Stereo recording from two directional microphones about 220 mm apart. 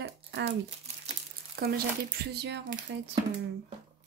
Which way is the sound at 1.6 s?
45° right (ahead or behind).